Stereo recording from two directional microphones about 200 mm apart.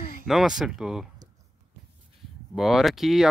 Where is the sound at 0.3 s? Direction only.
Centre (ahead or behind).